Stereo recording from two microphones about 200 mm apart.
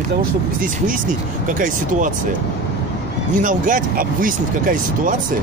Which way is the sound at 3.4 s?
40° right (ahead or behind).